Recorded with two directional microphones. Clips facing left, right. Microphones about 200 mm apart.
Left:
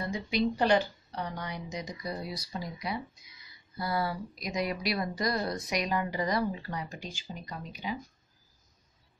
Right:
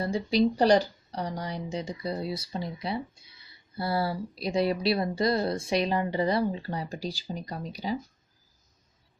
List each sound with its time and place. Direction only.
0.0 s speech: 35° right (ahead or behind)